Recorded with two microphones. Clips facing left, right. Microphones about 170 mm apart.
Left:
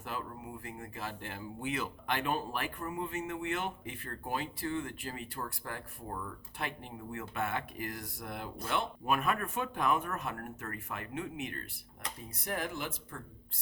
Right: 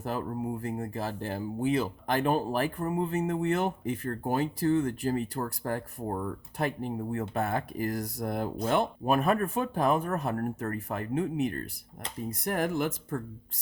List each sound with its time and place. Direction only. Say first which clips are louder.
0.0 s speech: right 9 dB; 40° right (ahead or behind)
12.3 s speech: right 8 dB; 50° right (ahead or behind)